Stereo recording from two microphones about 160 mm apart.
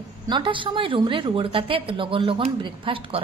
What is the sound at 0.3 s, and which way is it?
A woman's voice, 30° right (ahead or behind).